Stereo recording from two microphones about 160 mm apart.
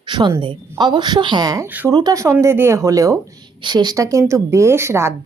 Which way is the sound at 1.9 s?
25° right (ahead or behind).